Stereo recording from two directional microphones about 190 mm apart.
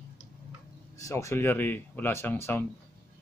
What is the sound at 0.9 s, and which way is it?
Speech, 15° left (ahead or behind).